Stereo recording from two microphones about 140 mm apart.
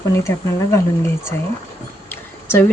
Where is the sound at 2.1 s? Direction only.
15° left (ahead or behind).